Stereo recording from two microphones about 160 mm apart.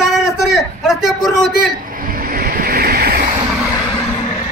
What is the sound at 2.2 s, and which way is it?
Waves, 60° right (ahead or behind).